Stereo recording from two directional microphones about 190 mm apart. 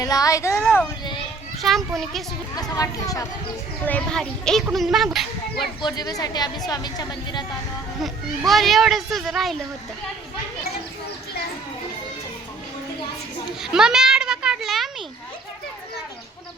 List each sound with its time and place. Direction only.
0.0 s a child's voice: 20° left (ahead or behind); by 2.2 s centre (ahead or behind)
2.6 s a woman's voice: 20° left (ahead or behind)
3.8 s a child's voice: 5° left (ahead or behind)
5.8 s a woman's voice: 20° left (ahead or behind)
8.0 s a child's voice: centre (ahead or behind)
13.6 s a child's voice: 5° right (ahead or behind)